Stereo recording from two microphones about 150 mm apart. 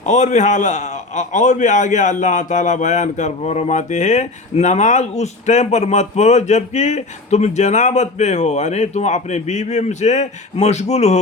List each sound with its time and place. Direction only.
0.0 s a man's voice: 55° left (ahead or behind)